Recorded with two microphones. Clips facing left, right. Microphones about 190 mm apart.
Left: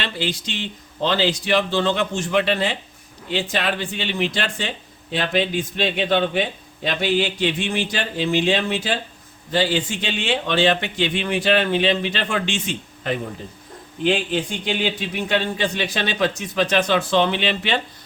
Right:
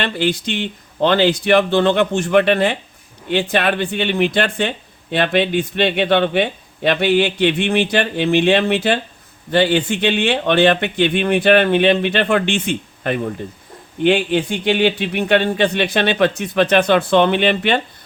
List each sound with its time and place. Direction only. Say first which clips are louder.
0.0 s a man's voice: right 7 dB; 55° right (ahead or behind)